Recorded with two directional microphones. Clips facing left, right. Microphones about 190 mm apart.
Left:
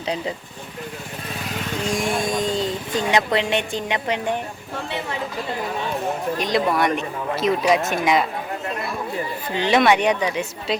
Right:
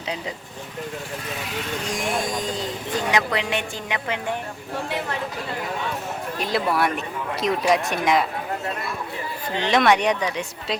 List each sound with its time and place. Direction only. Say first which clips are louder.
1.9 s speech: left 4 dB; 25° left (ahead or behind)
6.4 s speech: left 1 dB; 5° right (ahead or behind)
9.6 s speech: left 2 dB; 10° left (ahead or behind)